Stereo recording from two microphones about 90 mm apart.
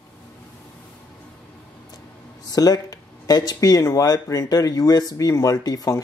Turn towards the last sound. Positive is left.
turn(degrees=40)  # may be behind; listen again after turning